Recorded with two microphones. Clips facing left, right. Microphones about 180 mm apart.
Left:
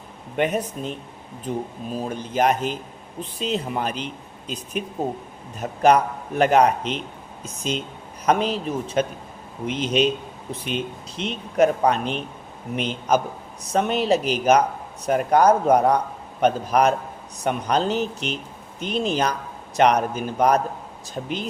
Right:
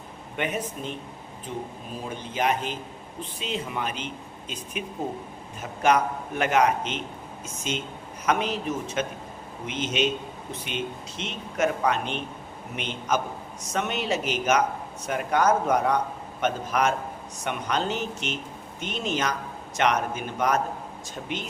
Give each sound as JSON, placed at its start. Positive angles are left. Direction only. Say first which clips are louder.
{"t": 0.3, "sound": "a man's voice", "louder": "left 6 dB", "side_deg": 40}